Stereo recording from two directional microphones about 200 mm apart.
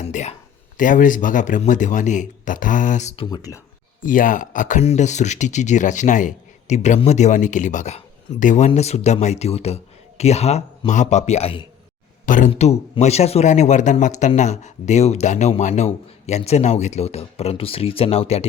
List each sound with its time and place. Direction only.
0.0 s a sound: 35° left (ahead or behind)
0.8 s speech: 40° left (ahead or behind)
3.2 s speech: 20° left (ahead or behind)
4.0 s speech: 40° left (ahead or behind)